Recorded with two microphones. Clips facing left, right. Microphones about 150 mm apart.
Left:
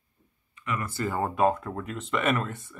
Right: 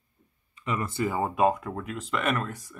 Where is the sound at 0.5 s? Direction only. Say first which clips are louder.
Right 2 dB; 30° right (ahead or behind).